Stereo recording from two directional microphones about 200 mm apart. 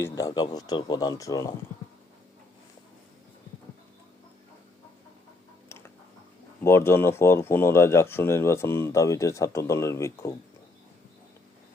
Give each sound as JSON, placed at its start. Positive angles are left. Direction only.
{"t": 0.0, "sound": "speech", "side_deg": 20}
{"t": 6.6, "sound": "speech", "side_deg": 10}